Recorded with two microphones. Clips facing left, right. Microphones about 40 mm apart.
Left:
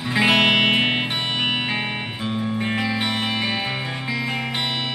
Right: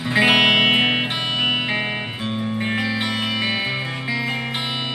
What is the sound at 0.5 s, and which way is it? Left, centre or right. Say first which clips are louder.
Music: right 2 dB; right.